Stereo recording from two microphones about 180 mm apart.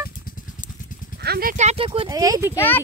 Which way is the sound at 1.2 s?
60° right (ahead or behind).